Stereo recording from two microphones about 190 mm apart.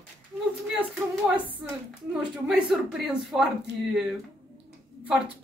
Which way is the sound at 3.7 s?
65° right (ahead or behind).